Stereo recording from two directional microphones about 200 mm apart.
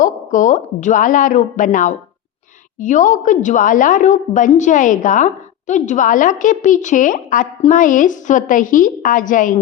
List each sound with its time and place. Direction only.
0.0 s a woman's voice: 40° left (ahead or behind)